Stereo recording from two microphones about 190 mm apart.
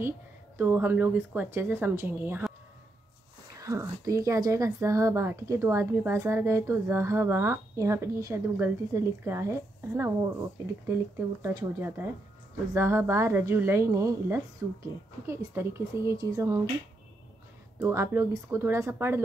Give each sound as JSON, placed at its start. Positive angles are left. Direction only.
{"t": 0.6, "sound": "speech", "side_deg": -10}
{"t": 3.5, "sound": "speech", "side_deg": -15}
{"t": 17.7, "sound": "speech", "side_deg": -15}